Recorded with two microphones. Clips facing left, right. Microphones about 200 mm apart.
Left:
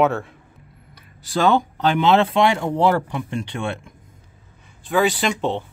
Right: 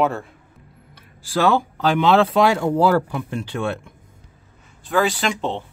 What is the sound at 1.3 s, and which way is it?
Speech, 5° right (ahead or behind).